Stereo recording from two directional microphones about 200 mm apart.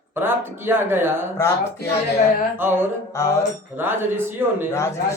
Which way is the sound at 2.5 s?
10° right (ahead or behind).